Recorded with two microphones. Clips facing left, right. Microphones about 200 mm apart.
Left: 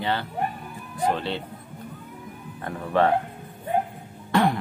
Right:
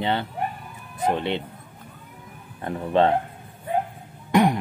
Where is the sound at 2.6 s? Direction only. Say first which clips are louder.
Right 2 dB; 20° right (ahead or behind).